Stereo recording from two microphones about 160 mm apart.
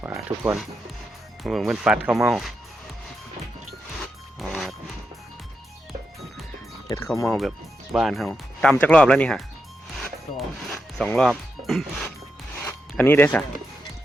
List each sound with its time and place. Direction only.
0.0 s speech: 15° right (ahead or behind)
1.5 s speech: centre (ahead or behind)
4.4 s music: centre (ahead or behind)
6.8 s music: 20° left (ahead or behind)
7.9 s speech: centre (ahead or behind)
10.0 s music: 5° left (ahead or behind)
12.6 s zipper: 15° left (ahead or behind)